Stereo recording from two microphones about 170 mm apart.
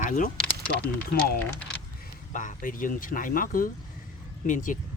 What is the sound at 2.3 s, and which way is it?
Speech, 50° left (ahead or behind).